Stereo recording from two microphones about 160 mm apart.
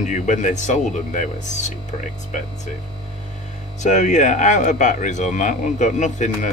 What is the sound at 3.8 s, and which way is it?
Speech, 50° left (ahead or behind).